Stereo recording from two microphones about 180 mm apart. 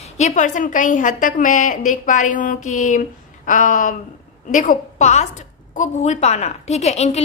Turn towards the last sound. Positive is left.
turn(degrees=35)  # may be behind; listen again after turning